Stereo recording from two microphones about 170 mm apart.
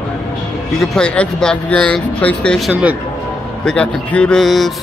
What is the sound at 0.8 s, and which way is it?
Speech, 5° left (ahead or behind).